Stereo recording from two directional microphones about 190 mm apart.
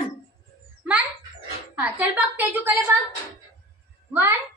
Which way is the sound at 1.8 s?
10° right (ahead or behind).